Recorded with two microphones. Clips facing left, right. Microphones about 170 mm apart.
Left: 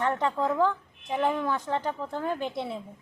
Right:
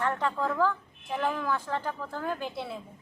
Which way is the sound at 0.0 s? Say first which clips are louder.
Left 2 dB; 20° left (ahead or behind).